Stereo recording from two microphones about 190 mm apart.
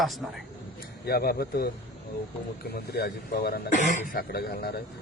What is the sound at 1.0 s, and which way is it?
Speech, 55° left (ahead or behind).